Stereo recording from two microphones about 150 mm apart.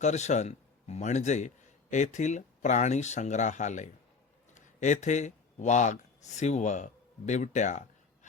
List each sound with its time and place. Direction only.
0.0 s a man's voice: 50° left (ahead or behind)